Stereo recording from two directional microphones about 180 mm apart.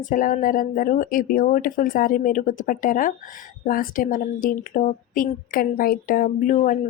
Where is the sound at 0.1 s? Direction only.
45° left (ahead or behind).